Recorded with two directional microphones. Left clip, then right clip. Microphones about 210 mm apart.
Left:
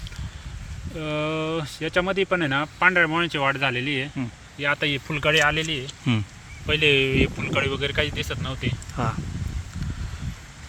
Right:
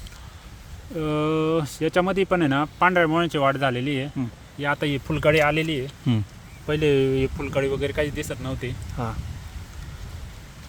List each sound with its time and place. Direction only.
0.9 s speech: 55° right (ahead or behind)
6.1 s speech: 5° right (ahead or behind)
6.7 s speech: 35° right (ahead or behind)
9.0 s speech: centre (ahead or behind)